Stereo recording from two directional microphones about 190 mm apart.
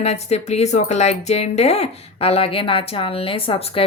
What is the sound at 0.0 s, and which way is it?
Speech, 35° left (ahead or behind).